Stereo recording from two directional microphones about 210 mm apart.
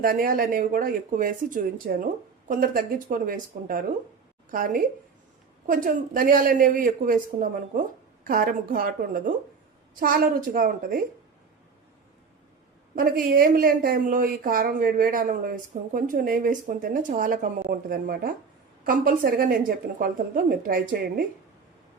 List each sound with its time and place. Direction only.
0.0 s speech: 40° right (ahead or behind)
13.0 s speech: 45° right (ahead or behind)